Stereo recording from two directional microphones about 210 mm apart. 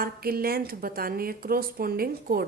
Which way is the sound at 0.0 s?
45° right (ahead or behind).